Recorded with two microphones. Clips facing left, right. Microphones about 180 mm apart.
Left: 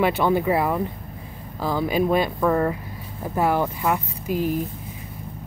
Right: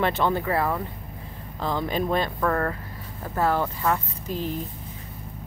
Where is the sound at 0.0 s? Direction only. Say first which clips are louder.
Left 4 dB; 10° left (ahead or behind).